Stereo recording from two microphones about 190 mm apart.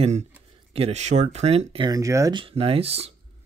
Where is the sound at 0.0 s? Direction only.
35° right (ahead or behind).